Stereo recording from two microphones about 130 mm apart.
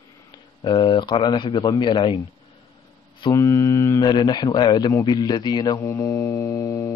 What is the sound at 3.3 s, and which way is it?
Mantra, 25° left (ahead or behind).